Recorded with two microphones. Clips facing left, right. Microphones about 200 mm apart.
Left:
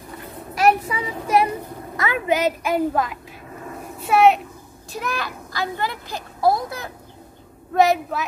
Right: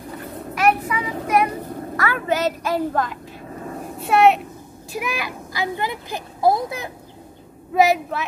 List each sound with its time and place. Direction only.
0.6 s child singing: 30° left (ahead or behind)
2.0 s a woman's voice: 15° left (ahead or behind); by 4.4 s centre (ahead or behind)
4.9 s a child's voice: 10° right (ahead or behind)
7.7 s speech: 5° right (ahead or behind)